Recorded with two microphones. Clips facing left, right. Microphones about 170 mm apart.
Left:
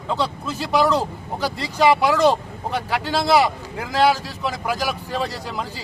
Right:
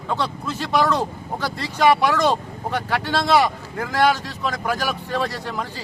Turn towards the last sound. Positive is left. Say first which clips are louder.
# right 1 dB
turn(degrees=15)  # may be behind; listen again after turning